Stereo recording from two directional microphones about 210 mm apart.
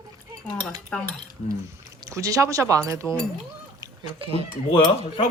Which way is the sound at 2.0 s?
15° right (ahead or behind).